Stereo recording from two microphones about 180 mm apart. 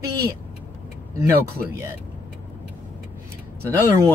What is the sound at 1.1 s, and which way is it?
Speech, 15° right (ahead or behind).